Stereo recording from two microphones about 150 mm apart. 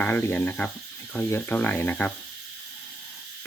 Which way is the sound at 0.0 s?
15° left (ahead or behind).